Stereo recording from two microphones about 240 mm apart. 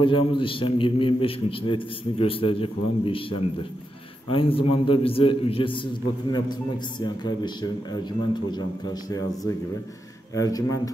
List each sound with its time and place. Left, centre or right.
0.0 s a man's voice: left